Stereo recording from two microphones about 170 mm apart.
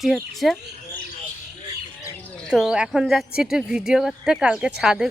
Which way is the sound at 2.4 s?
5° right (ahead or behind).